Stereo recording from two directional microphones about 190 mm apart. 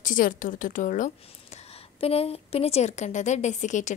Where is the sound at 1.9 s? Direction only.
30° left (ahead or behind).